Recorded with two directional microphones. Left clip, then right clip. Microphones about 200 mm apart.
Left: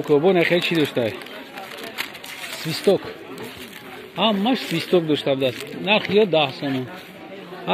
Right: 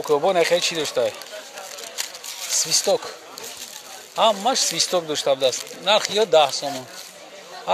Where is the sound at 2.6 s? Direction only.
20° right (ahead or behind).